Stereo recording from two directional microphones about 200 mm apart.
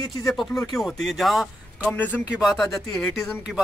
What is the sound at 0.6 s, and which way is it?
Speech, centre (ahead or behind).